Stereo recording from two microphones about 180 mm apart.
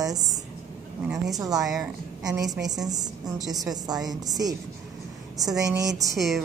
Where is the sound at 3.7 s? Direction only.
20° right (ahead or behind).